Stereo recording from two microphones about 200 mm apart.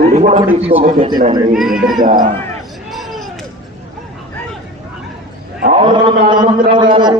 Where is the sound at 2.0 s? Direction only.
40° right (ahead or behind).